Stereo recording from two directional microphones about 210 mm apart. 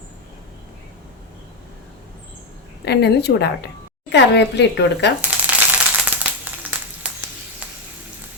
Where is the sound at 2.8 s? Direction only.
55° left (ahead or behind).